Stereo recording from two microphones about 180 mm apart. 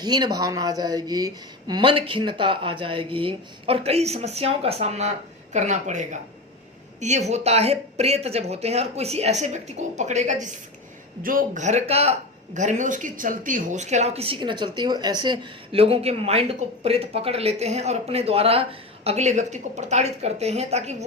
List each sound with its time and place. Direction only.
0.0 s a woman's voice: 25° right (ahead or behind); by 10.3 s 40° right (ahead or behind)
11.2 s a woman's voice: 50° right (ahead or behind)